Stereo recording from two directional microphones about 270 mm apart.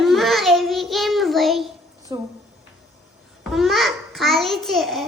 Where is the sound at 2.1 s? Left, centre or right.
Centre.